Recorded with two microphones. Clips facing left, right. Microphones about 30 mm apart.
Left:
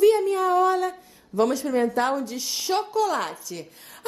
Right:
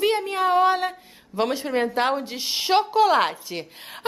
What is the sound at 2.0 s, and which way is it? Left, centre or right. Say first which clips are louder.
A child's voice: right 1 dB; right.